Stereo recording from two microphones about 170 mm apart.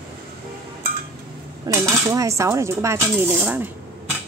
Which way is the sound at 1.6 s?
15° right (ahead or behind).